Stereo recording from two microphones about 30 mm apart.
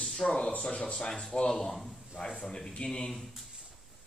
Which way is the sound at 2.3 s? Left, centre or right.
Left.